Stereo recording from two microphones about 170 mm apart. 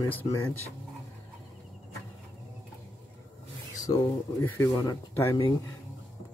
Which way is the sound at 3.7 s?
20° left (ahead or behind).